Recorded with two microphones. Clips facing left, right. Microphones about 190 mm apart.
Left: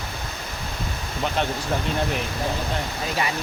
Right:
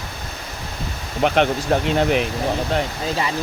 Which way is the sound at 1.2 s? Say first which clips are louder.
Right 8 dB; 70° right (ahead or behind).